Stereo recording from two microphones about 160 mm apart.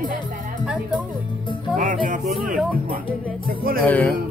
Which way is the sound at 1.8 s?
55° right (ahead or behind).